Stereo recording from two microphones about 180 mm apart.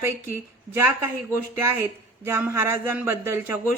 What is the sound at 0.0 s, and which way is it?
Speech, 15° right (ahead or behind).